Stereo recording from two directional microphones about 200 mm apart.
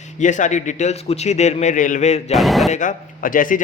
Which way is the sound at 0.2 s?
40° left (ahead or behind).